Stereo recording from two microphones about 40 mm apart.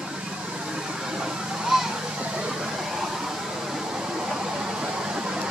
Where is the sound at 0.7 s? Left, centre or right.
Centre.